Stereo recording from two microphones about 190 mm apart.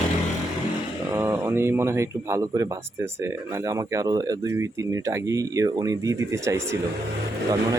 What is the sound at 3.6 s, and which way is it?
Speech, 15° right (ahead or behind).